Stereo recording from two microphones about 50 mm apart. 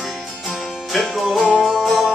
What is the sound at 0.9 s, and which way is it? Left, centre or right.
Music, centre.